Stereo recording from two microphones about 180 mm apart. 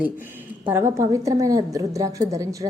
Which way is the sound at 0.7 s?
15° right (ahead or behind).